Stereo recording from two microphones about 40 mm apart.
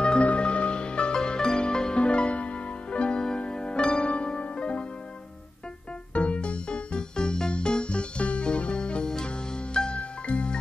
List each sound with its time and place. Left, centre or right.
0.2 s music: left
6.1 s music: left